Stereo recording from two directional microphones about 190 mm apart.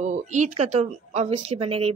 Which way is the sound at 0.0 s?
40° right (ahead or behind).